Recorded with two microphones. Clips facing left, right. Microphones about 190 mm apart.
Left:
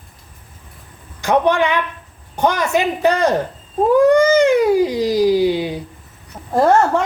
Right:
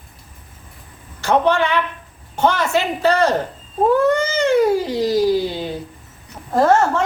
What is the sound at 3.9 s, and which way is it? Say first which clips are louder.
Cat: left 8 dB; 15° left (ahead or behind).